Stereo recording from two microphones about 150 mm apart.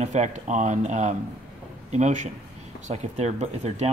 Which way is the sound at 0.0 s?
50° right (ahead or behind).